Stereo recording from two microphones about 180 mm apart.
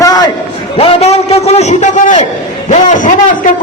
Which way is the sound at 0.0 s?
20° left (ahead or behind).